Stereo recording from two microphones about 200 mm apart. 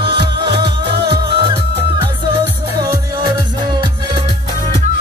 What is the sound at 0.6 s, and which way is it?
Music, 55° right (ahead or behind).